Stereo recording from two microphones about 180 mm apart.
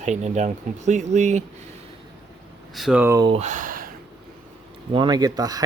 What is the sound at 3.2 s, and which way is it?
Speech, 35° right (ahead or behind).